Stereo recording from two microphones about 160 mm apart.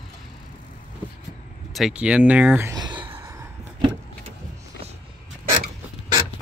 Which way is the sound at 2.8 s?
30° right (ahead or behind).